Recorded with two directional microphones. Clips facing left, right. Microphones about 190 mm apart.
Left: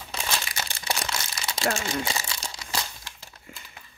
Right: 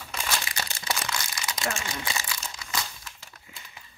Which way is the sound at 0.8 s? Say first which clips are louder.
Left 1 dB; 25° left (ahead or behind).